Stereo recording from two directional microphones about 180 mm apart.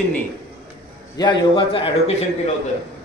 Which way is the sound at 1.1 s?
25° left (ahead or behind).